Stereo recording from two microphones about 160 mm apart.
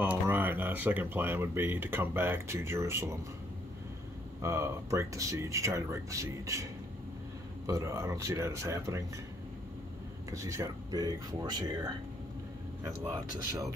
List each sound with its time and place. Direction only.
0.0 s speech: 10° right (ahead or behind)
4.4 s speech: 15° right (ahead or behind)
10.3 s speech: 20° right (ahead or behind)